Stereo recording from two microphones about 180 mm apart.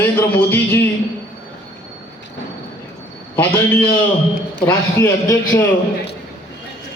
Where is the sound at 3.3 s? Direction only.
10° left (ahead or behind).